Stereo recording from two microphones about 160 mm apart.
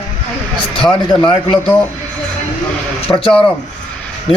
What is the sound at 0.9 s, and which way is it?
Speech, 30° left (ahead or behind).